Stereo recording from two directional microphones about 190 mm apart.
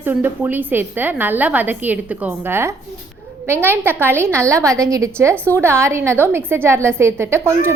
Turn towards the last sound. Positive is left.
turn(degrees=-15)  # may be behind; listen again after turning